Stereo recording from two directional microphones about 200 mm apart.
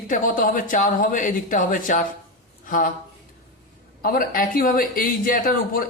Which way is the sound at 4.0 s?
45° left (ahead or behind).